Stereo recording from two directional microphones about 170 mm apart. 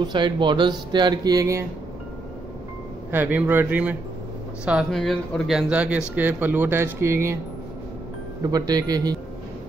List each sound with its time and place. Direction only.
0.0 s speech: 25° right (ahead or behind)
3.1 s speech: 10° right (ahead or behind)
8.4 s speech: 20° right (ahead or behind)